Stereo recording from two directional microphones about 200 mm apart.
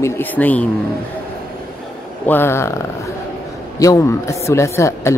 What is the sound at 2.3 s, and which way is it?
Speech, 10° left (ahead or behind).